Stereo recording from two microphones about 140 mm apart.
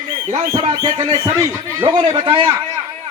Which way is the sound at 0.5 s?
30° right (ahead or behind).